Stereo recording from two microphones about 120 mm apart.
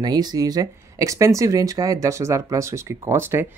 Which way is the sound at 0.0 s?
35° right (ahead or behind).